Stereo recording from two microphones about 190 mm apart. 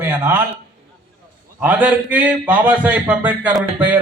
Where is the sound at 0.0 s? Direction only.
10° right (ahead or behind).